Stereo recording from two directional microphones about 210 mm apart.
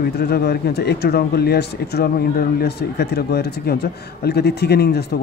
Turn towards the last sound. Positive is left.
turn(degrees=50)  # may be behind; listen again after turning